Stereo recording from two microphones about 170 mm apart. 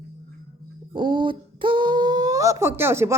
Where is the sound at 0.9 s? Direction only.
30° right (ahead or behind).